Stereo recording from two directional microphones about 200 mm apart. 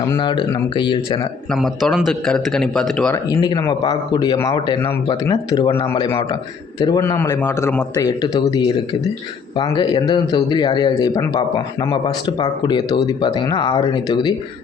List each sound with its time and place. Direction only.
0.2 s speech: 25° left (ahead or behind)
1.5 s a man's voice: centre (ahead or behind)
3.2 s a man's voice: 20° left (ahead or behind)